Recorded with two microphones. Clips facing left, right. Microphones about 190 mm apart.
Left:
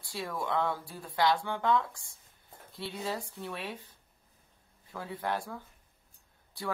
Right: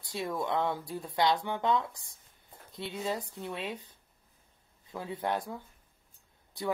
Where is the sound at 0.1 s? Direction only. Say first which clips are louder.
Right 1 dB; 20° right (ahead or behind).